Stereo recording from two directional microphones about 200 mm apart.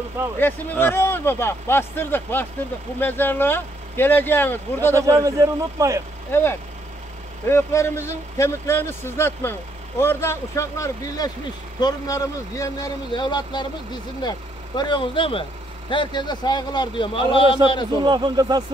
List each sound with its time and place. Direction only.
0.4 s speech: 10° left (ahead or behind)
4.9 s speech: 15° right (ahead or behind)
6.3 s a man's voice: 10° left (ahead or behind)
14.8 s a man's voice: 25° left (ahead or behind)
18.0 s speech: 20° right (ahead or behind)